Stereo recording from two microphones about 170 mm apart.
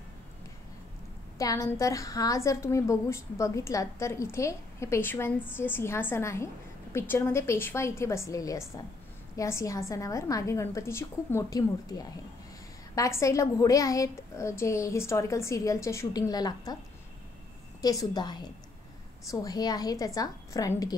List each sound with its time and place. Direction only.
1.4 s a woman's voice: 20° left (ahead or behind)
17.8 s a woman's voice: 25° left (ahead or behind)
19.4 s a woman's voice: 25° left (ahead or behind)